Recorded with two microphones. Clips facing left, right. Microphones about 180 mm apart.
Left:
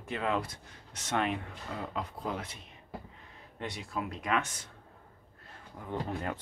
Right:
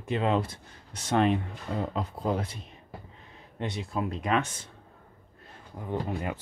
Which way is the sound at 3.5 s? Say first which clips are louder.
Right 5 dB; 25° right (ahead or behind).